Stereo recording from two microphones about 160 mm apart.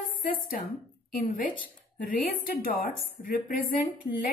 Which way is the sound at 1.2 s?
60° left (ahead or behind).